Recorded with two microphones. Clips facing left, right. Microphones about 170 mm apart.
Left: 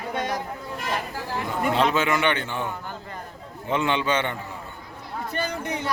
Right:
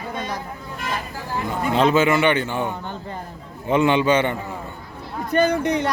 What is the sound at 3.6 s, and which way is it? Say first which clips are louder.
Speech: right 6 dB; 10° right (ahead or behind).